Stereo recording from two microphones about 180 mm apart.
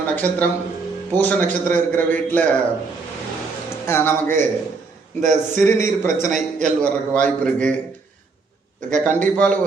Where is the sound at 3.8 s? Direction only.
15° left (ahead or behind).